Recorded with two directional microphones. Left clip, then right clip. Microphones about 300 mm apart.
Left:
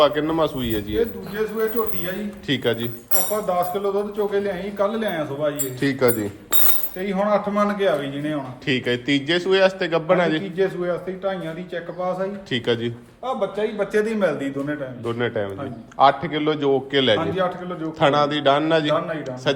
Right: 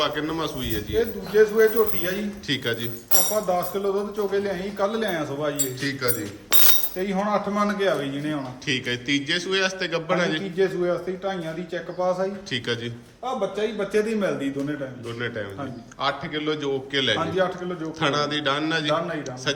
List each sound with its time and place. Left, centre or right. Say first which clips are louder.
0.0 s a man's voice: left 7 dB; centre
1.3 s a man's voice: right 8 dB; right
2.5 s a man's voice: left 4 dB; centre
5.8 s a man's voice: left 9 dB; centre